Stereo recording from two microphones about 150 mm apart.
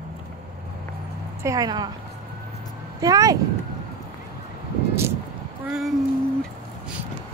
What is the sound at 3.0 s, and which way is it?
Speech, 25° right (ahead or behind).